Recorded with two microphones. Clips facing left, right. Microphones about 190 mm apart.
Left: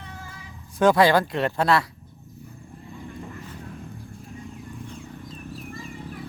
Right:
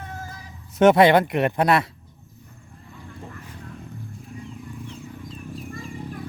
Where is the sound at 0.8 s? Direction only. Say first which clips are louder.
Right 3 dB; 20° right (ahead or behind).